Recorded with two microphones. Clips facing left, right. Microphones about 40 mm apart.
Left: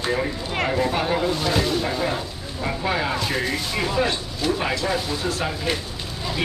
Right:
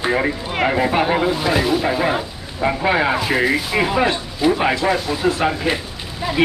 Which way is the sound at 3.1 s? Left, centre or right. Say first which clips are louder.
Right 7 dB; centre.